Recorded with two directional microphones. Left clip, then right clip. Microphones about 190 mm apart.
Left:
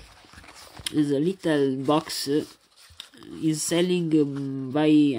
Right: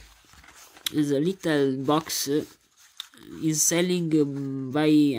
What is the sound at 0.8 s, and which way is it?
Speech, 10° right (ahead or behind).